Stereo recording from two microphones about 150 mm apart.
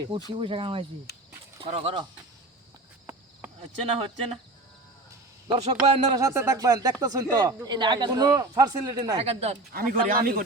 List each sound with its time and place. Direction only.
0.3 s speech: 35° right (ahead or behind)
1.1 s a sound: 90° left
1.6 s speech: 40° right (ahead or behind)
3.6 s speech: 40° right (ahead or behind)
5.6 s a man's voice: 45° right (ahead or behind)
6.1 s speech: 20° right (ahead or behind)
9.2 s a man's voice: 45° right (ahead or behind)
9.7 s speech: 75° right (ahead or behind)